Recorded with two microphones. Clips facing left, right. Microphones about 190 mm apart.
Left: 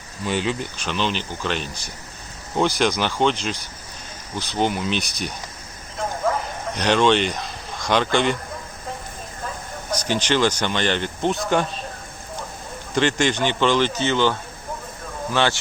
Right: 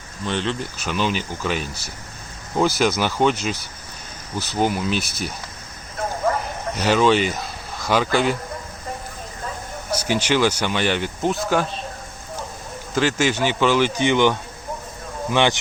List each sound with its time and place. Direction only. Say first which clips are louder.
0.3 s speech: left 1 dB; 5° left (ahead or behind)
0.8 s speech: right 2 dB; 10° right (ahead or behind)
6.7 s speech: right 1 dB; 5° right (ahead or behind)
9.9 s speech: right 1 dB; 10° right (ahead or behind)
12.9 s speech: even; 5° right (ahead or behind)